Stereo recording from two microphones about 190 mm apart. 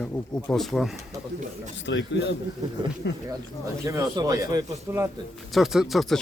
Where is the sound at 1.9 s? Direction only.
70° left (ahead or behind).